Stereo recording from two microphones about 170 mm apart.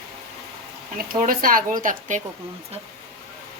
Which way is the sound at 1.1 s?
55° right (ahead or behind).